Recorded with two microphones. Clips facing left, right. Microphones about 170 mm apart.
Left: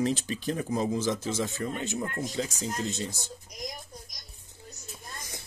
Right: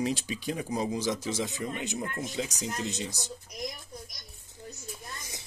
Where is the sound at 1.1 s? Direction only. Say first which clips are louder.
Left 1 dB; 50° left (ahead or behind).